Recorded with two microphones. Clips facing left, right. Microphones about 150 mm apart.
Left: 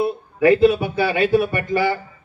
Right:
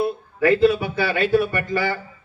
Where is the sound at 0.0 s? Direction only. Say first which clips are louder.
Left 3 dB; 15° left (ahead or behind).